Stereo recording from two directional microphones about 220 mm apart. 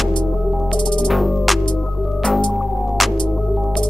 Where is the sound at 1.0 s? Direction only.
Centre (ahead or behind).